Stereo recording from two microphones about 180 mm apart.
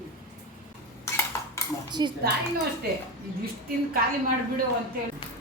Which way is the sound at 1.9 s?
25° right (ahead or behind).